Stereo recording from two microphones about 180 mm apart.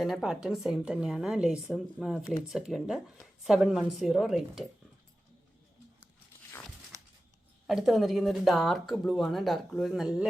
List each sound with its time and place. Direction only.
0.0 s speech: centre (ahead or behind)
6.9 s a sound: 20° right (ahead or behind)
7.7 s speech: centre (ahead or behind)